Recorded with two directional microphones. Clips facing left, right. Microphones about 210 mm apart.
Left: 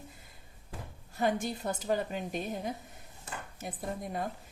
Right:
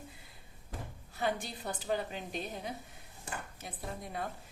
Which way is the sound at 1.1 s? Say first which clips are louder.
Left 5 dB; 45° left (ahead or behind).